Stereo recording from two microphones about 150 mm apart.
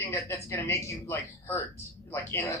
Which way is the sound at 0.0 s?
20° left (ahead or behind).